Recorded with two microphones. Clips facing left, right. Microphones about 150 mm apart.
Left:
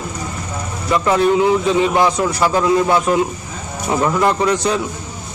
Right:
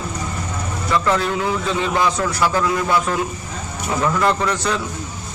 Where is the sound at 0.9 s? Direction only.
20° left (ahead or behind).